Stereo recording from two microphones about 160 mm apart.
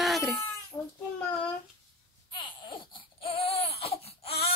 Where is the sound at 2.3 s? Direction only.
30° left (ahead or behind).